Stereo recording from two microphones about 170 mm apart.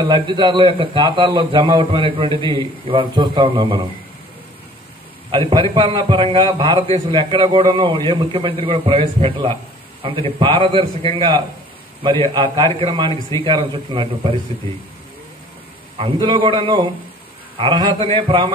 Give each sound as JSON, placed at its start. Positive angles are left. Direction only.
{"t": 0.0, "sound": "a man's voice", "side_deg": -25}
{"t": 5.3, "sound": "a man's voice", "side_deg": -30}
{"t": 16.0, "sound": "a man's voice", "side_deg": -25}